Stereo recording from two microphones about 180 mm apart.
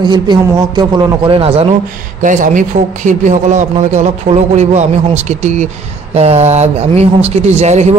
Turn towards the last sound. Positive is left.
turn(degrees=-40)  # may be behind; listen again after turning